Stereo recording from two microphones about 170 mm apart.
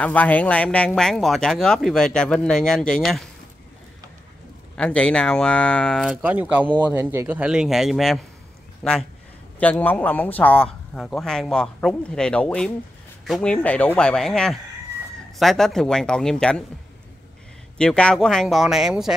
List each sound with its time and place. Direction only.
0.0 s speech: 10° left (ahead or behind)
4.7 s a man's voice: 5° left (ahead or behind)
17.7 s speech: 5° left (ahead or behind)